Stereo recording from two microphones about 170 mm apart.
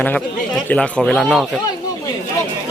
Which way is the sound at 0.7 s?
5° left (ahead or behind).